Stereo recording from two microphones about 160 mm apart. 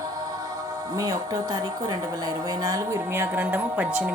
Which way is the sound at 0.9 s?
25° right (ahead or behind).